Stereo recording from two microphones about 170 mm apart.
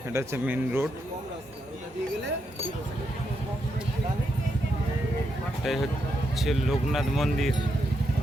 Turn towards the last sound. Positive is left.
turn(degrees=0)  # may be behind; listen again after turning